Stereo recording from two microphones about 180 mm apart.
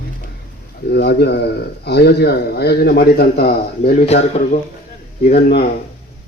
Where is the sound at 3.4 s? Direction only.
40° left (ahead or behind).